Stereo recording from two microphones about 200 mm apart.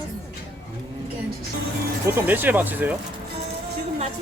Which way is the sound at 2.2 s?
10° right (ahead or behind).